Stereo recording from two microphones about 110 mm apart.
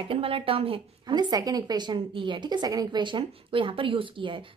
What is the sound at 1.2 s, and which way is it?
A woman's voice, 35° right (ahead or behind).